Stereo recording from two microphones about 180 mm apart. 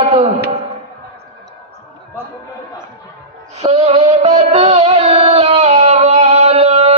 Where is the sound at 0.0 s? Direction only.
35° right (ahead or behind).